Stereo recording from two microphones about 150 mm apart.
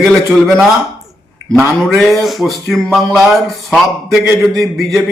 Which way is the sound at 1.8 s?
Centre (ahead or behind).